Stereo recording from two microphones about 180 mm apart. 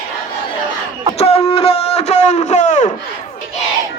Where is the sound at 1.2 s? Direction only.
35° left (ahead or behind).